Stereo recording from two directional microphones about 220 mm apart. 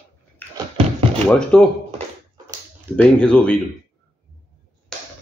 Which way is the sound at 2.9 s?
5° left (ahead or behind).